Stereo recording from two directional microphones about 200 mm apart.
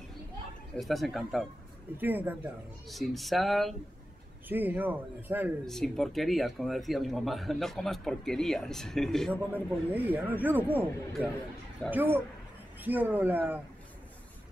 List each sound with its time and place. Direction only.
0.7 s speech: centre (ahead or behind)
5.7 s speech: centre (ahead or behind)
9.3 s speech: 10° right (ahead or behind)
11.9 s speech: 10° right (ahead or behind)